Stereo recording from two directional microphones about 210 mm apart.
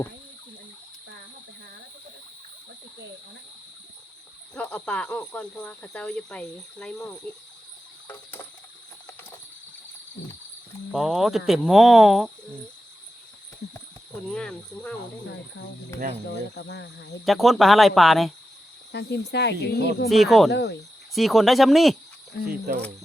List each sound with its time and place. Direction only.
4.5 s cricket: 5° left (ahead or behind)
10.9 s cricket: centre (ahead or behind)
14.3 s cricket: 5° left (ahead or behind)
16.6 s speech: 55° left (ahead or behind)
17.2 s cricket: centre (ahead or behind)
18.9 s speech: 55° left (ahead or behind)
20.1 s cricket: centre (ahead or behind)
20.5 s speech: 55° left (ahead or behind)
21.2 s cricket: centre (ahead or behind)
22.4 s speech: 45° right (ahead or behind)